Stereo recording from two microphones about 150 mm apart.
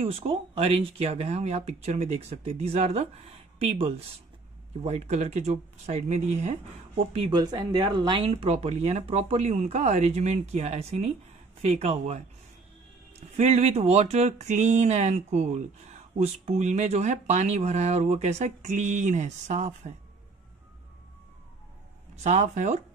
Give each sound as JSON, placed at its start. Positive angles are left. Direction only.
{"t": 0.0, "sound": "speech", "side_deg": -40}
{"t": 7.2, "sound": "speech", "side_deg": -30}
{"t": 13.4, "sound": "speech", "side_deg": -50}
{"t": 22.1, "sound": "speech", "side_deg": -50}